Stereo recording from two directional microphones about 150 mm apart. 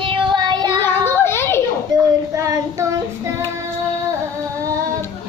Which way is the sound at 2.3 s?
20° right (ahead or behind).